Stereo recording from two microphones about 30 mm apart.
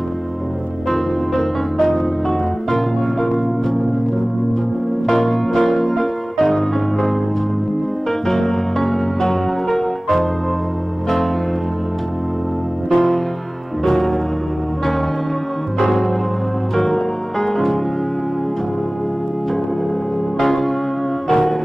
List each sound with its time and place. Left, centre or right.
0.8 s music: centre
5.0 s music: centre
8.3 s music: centre
12.9 s music: centre
15.8 s organ: centre
16.7 s music: centre
20.3 s music: centre